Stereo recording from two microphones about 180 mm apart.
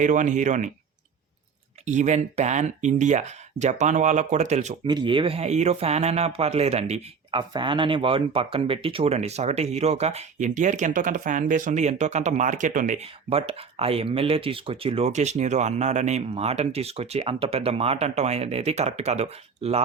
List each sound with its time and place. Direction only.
0.0 s speech: 45° right (ahead or behind)
1.8 s speech: 40° right (ahead or behind)
4.9 s speech: 25° right (ahead or behind)
7.3 s speech: 25° right (ahead or behind)